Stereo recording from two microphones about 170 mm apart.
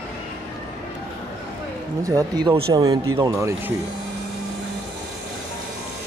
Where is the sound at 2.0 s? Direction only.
20° right (ahead or behind).